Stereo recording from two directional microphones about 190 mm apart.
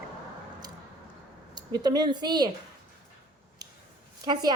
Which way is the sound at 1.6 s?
20° right (ahead or behind).